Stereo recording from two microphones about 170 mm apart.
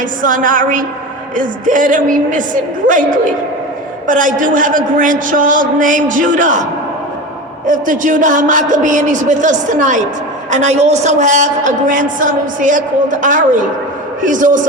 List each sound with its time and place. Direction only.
0.2 s a woman's voice: 50° right (ahead or behind)
7.7 s a woman's voice: 50° right (ahead or behind)